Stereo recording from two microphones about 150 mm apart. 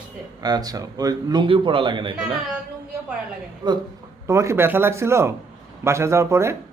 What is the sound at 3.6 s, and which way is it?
Speech, 30° right (ahead or behind).